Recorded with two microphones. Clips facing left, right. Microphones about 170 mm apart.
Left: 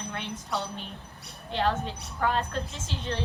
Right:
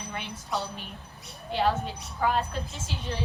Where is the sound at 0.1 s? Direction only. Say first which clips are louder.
Right 1 dB; 5° right (ahead or behind).